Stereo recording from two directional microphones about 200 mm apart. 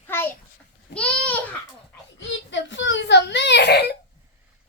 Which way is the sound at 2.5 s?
70° left (ahead or behind).